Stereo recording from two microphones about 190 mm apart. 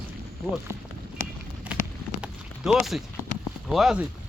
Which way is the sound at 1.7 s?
5° right (ahead or behind).